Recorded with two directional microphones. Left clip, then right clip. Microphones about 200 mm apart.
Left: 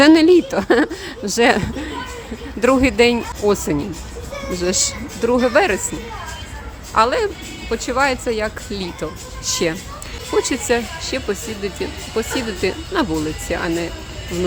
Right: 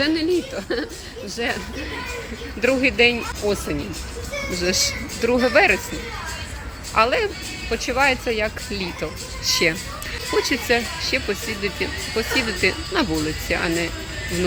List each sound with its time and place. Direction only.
0.0 s speech: 40° left (ahead or behind)
3.4 s speech: 40° left (ahead or behind)
5.2 s speech: 20° left (ahead or behind)
6.9 s speech: 20° left (ahead or behind)